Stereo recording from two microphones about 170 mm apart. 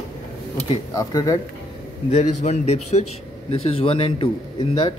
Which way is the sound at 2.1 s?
40° left (ahead or behind).